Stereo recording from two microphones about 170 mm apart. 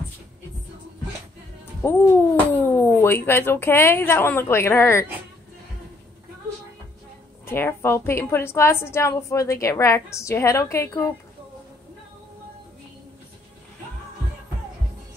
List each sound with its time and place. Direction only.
1.8 s music: 15° left (ahead or behind)
2.5 s a woman's voice: 15° left (ahead or behind)
7.4 s a woman's voice: 15° left (ahead or behind)